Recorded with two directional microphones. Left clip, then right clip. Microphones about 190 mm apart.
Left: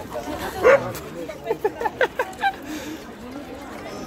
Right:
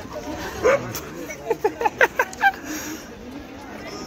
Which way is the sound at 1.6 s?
15° right (ahead or behind).